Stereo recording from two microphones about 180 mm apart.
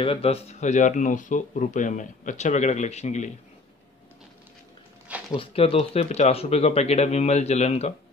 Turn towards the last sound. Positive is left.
turn(degrees=35)  # may be behind; listen again after turning